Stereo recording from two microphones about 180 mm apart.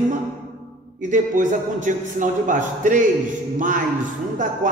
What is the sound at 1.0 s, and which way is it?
A man's voice, 45° right (ahead or behind).